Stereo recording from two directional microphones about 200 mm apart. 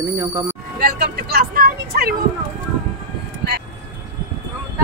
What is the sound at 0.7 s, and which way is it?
A woman's voice, 50° right (ahead or behind).